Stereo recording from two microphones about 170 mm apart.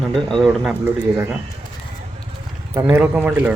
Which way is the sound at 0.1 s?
Centre (ahead or behind).